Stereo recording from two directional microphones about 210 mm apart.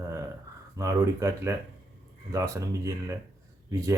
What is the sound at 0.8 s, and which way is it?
Speech, 15° right (ahead or behind).